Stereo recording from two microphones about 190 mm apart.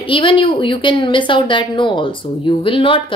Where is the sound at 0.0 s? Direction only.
30° left (ahead or behind).